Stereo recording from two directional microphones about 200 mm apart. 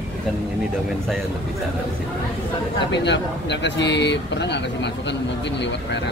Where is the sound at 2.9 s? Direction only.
60° left (ahead or behind).